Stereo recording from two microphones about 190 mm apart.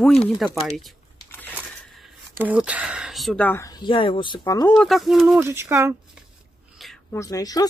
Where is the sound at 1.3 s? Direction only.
10° left (ahead or behind).